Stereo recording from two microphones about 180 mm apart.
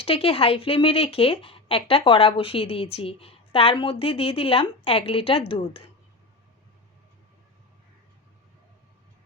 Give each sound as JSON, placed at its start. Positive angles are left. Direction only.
{"t": 0.0, "sound": "a woman's voice", "side_deg": 30}